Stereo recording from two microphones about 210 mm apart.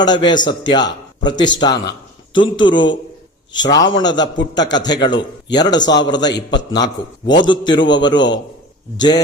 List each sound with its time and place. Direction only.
0.0 s a man's voice: 20° left (ahead or behind)
6.3 s a man's voice: 55° left (ahead or behind)
7.4 s a man's voice: 20° left (ahead or behind)